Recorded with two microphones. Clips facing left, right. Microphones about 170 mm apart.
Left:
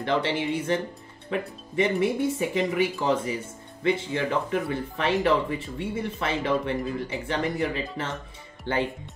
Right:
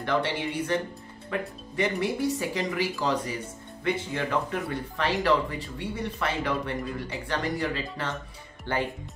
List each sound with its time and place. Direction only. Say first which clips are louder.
0.0 s speech: left 2 dB; 20° left (ahead or behind)
4.5 s speech: left 4 dB; 20° left (ahead or behind)